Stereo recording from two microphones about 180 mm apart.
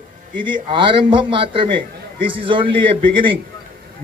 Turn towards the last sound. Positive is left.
turn(degrees=-30)  # may be behind; listen again after turning